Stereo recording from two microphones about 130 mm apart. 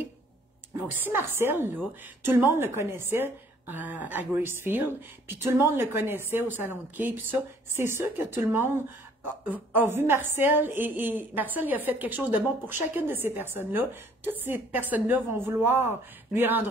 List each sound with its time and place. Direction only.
0.8 s a woman's voice: 15° right (ahead or behind)